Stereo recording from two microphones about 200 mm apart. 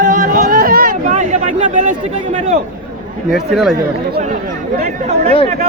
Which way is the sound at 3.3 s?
Centre (ahead or behind).